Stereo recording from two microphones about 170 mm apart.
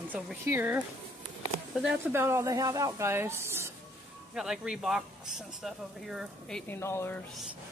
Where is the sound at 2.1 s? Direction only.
15° right (ahead or behind).